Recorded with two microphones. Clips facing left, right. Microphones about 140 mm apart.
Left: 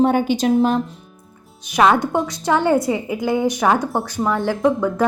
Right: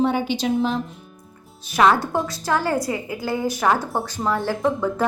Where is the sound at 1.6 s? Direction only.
15° left (ahead or behind).